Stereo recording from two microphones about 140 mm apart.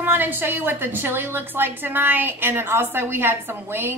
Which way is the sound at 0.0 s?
15° right (ahead or behind).